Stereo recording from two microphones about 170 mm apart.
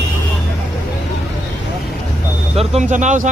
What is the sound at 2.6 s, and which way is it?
Speech, 45° right (ahead or behind).